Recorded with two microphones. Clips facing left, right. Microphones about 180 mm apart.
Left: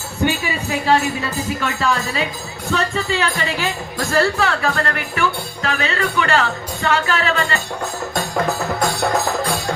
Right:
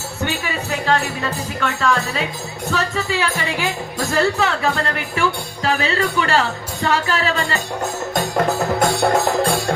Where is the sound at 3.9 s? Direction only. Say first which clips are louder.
Left 1 dB; 20° right (ahead or behind).